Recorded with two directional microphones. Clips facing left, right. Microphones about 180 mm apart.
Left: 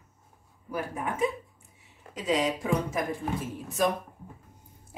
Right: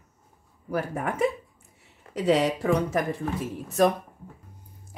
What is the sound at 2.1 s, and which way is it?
Speech, 65° right (ahead or behind).